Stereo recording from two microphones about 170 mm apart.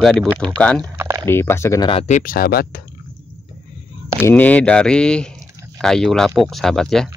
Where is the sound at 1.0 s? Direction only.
15° right (ahead or behind).